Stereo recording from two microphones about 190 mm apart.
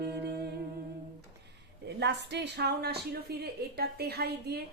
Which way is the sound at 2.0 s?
65° right (ahead or behind).